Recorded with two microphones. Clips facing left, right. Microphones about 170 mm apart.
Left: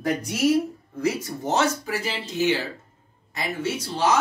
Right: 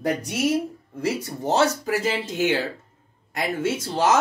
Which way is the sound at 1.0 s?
30° right (ahead or behind).